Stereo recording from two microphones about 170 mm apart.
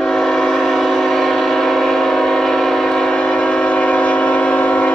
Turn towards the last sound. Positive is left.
turn(degrees=5)  # may be behind; listen again after turning